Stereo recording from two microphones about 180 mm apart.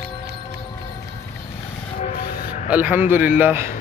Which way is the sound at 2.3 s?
55° left (ahead or behind).